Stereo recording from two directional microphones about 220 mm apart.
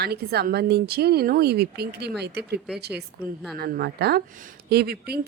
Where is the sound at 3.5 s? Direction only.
45° right (ahead or behind).